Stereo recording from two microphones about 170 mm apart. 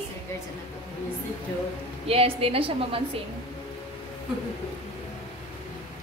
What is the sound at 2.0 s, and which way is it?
Speech, 35° right (ahead or behind).